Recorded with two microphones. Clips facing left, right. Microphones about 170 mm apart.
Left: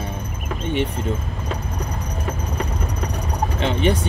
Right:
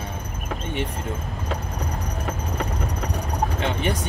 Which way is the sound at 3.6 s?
25° left (ahead or behind).